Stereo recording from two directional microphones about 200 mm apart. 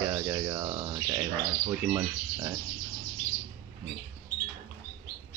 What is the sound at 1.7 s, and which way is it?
Speech, 15° right (ahead or behind).